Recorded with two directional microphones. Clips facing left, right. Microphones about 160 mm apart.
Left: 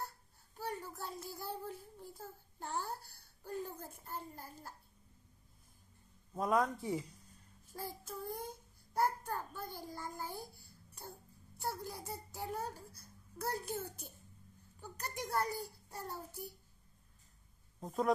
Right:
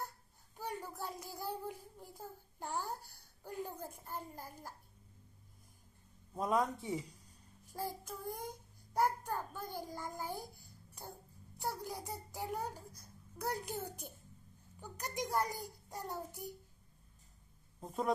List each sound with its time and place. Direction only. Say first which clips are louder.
0.6 s a sound: even; 10° right (ahead or behind)
6.3 s a man's voice: left 1 dB; centre (ahead or behind)
7.6 s child singing: right 4 dB; 15° right (ahead or behind)
11.5 s a child's voice: right 1 dB; 15° right (ahead or behind)
17.7 s speech: left 2 dB; centre (ahead or behind)